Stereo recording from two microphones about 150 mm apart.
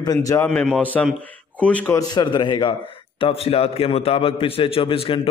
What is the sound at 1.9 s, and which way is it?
A man's voice, 30° left (ahead or behind).